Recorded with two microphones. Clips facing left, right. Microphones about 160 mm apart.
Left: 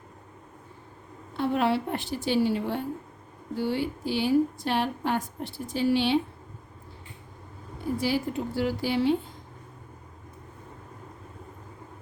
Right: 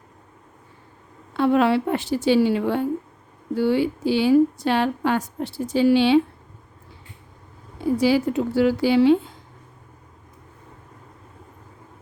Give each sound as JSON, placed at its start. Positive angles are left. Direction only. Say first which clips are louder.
{"t": 1.3, "sound": "a woman's voice", "louder": "right 7 dB", "side_deg": -85}
{"t": 7.9, "sound": "a woman's voice", "louder": "right 8 dB", "side_deg": -90}